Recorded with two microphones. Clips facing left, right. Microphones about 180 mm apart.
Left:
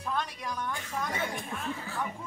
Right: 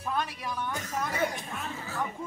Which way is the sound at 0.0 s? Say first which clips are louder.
Right 1 dB; 5° right (ahead or behind).